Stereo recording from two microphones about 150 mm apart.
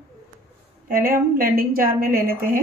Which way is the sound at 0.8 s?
75° right (ahead or behind).